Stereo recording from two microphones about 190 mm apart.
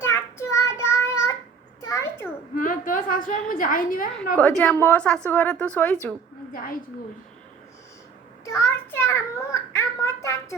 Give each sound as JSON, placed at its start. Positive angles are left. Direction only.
{"t": 0.0, "sound": "child singing", "side_deg": 15}
{"t": 1.8, "sound": "a sound", "side_deg": 15}
{"t": 2.6, "sound": "a woman's voice", "side_deg": 45}
{"t": 4.4, "sound": "a woman's voice", "side_deg": 5}
{"t": 8.4, "sound": "a child's voice", "side_deg": 15}